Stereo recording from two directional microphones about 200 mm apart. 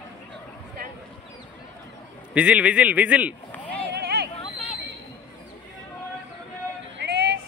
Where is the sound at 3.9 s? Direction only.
55° right (ahead or behind).